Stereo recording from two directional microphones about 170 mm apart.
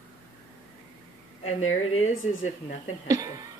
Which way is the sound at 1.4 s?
40° left (ahead or behind).